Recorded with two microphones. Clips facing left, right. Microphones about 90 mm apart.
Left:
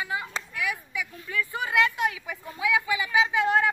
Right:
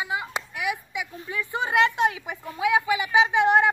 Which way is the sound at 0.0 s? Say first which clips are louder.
Right 2 dB; 15° right (ahead or behind).